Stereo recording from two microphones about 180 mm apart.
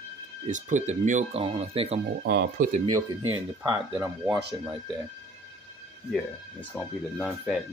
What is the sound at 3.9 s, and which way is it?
Speech, 5° right (ahead or behind).